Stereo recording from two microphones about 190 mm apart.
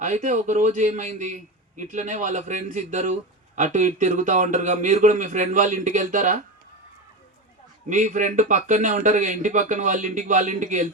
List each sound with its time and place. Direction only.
0.0 s a man's voice: 40° right (ahead or behind)
7.9 s a man's voice: 40° right (ahead or behind)